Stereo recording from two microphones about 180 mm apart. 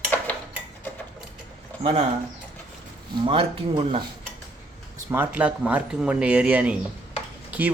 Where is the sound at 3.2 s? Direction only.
30° right (ahead or behind).